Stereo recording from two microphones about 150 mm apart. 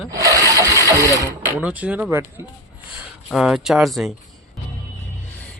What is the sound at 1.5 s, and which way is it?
Speech, 10° right (ahead or behind).